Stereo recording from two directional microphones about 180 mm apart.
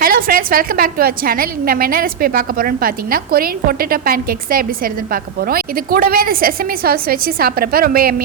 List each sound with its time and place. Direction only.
0.0 s a woman's voice: 55° right (ahead or behind)